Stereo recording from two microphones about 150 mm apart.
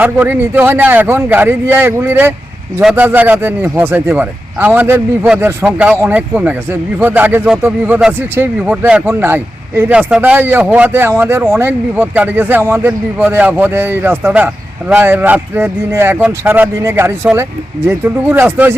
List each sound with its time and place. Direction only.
0.0 s a man's voice: 10° right (ahead or behind)